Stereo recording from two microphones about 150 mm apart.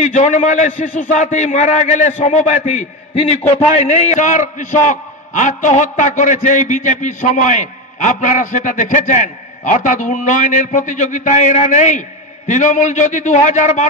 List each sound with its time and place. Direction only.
0.0 s a man's voice: 55° left (ahead or behind)